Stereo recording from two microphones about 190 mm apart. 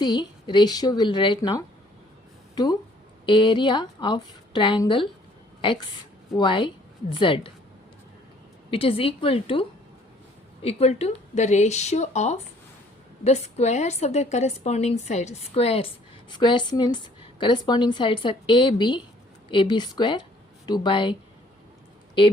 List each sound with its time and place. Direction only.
0.0 s a woman's voice: 25° left (ahead or behind)
3.2 s a woman's voice: 25° left (ahead or behind)
6.3 s a woman's voice: 25° left (ahead or behind)
8.7 s a woman's voice: 30° left (ahead or behind)